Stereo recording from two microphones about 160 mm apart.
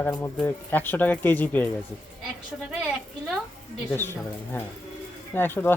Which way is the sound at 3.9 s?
15° left (ahead or behind).